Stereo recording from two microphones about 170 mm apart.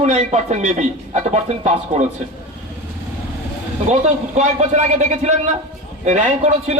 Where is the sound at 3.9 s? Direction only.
40° right (ahead or behind).